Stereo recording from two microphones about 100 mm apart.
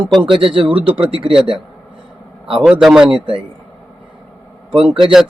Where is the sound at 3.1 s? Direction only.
60° right (ahead or behind).